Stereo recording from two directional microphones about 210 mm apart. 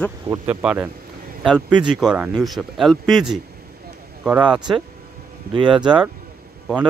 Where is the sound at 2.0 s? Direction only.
5° right (ahead or behind).